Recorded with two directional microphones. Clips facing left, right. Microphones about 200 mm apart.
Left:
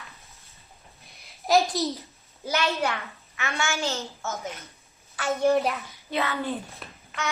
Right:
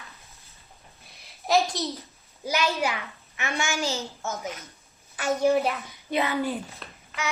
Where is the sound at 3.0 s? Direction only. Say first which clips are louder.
Even; 15° right (ahead or behind).